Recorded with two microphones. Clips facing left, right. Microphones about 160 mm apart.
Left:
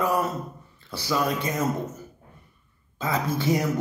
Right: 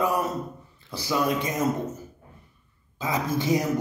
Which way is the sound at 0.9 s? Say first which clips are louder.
Right 1 dB; 15° right (ahead or behind).